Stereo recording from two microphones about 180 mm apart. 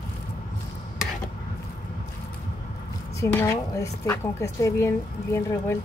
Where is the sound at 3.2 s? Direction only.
15° left (ahead or behind).